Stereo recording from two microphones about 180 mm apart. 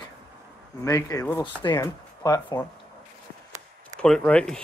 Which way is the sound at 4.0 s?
5° left (ahead or behind).